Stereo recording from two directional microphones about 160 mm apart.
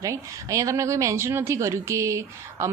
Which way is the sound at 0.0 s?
20° right (ahead or behind).